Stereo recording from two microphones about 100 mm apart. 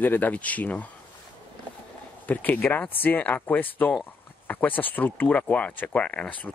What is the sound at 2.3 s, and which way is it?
Speech, 15° left (ahead or behind).